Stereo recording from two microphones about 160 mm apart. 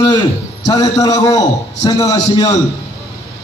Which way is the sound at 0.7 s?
25° left (ahead or behind).